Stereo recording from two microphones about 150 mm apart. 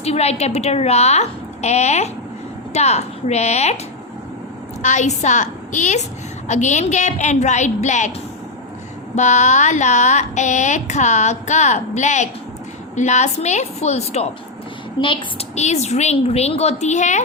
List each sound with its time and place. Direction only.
0.0 s a woman's voice: 45° left (ahead or behind)
4.8 s a woman's voice: 55° left (ahead or behind)
9.1 s a woman's voice: 55° left (ahead or behind)